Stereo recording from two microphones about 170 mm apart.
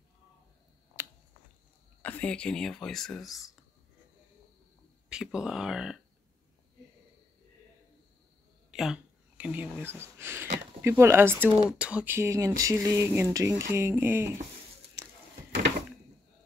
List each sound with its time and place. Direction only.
2.0 s speech: 10° left (ahead or behind)
5.1 s speech: 5° right (ahead or behind)
8.7 s speech: 5° right (ahead or behind)